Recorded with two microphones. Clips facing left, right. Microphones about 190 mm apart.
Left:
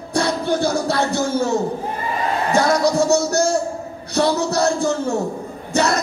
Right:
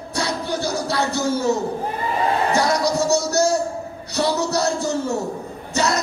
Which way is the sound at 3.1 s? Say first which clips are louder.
Left 1 dB; 55° left (ahead or behind).